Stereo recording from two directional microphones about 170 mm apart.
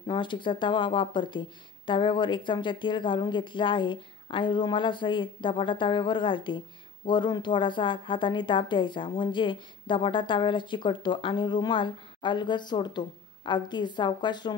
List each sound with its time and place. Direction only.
0.0 s a woman's voice: 30° left (ahead or behind)